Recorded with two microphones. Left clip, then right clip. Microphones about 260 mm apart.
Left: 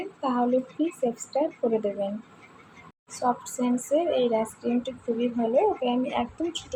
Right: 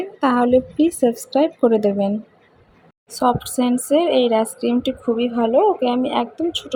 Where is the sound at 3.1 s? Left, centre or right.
Right.